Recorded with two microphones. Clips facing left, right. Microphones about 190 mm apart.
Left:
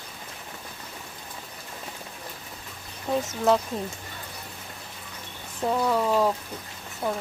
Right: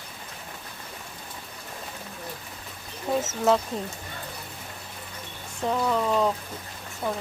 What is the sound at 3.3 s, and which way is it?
Speech, centre (ahead or behind).